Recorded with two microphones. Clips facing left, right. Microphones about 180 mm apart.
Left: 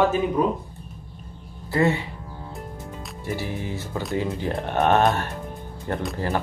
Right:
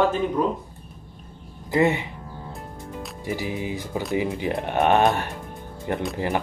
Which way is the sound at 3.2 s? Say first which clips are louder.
Right 1 dB; 15° right (ahead or behind).